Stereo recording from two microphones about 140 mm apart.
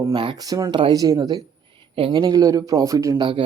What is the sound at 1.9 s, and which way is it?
Speech, 40° right (ahead or behind).